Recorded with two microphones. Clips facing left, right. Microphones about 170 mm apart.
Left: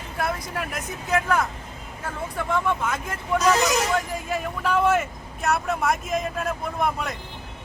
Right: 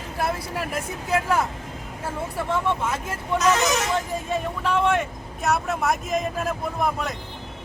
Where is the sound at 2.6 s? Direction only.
25° right (ahead or behind).